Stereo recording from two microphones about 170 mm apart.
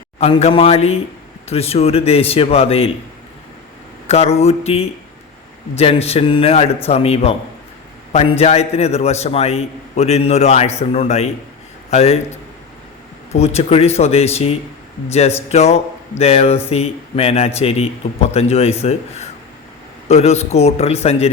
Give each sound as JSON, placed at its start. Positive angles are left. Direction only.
{"t": 0.2, "sound": "a man's voice", "side_deg": 40}
{"t": 4.0, "sound": "a man's voice", "side_deg": 40}
{"t": 13.3, "sound": "a man's voice", "side_deg": 40}